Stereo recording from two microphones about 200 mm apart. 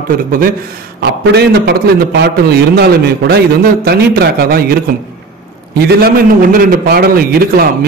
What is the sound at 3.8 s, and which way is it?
Speech, 50° right (ahead or behind).